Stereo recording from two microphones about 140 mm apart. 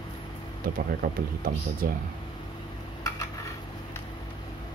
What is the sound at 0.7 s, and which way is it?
Speech, 90° right.